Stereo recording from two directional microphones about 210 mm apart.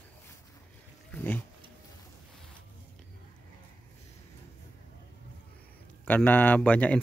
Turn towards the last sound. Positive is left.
turn(degrees=5)  # may be behind; listen again after turning